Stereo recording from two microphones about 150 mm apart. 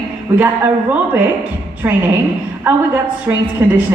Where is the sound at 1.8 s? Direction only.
20° right (ahead or behind).